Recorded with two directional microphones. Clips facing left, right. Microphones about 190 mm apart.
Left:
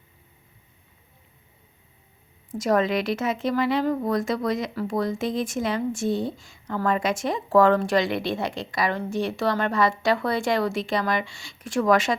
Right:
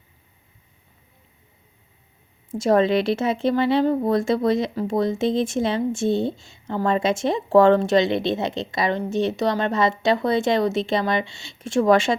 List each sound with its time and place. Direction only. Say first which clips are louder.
2.5 s a woman's voice: right 4 dB; 25° right (ahead or behind)